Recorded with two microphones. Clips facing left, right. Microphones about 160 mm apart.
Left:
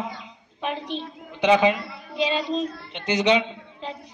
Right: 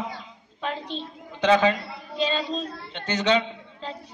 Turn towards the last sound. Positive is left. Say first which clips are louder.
# left 1 dB
turn(degrees=15)  # may be behind; listen again after turning